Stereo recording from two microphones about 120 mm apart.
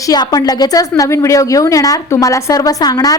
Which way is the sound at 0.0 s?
35° left (ahead or behind).